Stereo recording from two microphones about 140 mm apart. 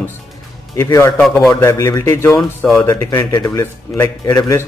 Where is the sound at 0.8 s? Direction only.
20° left (ahead or behind).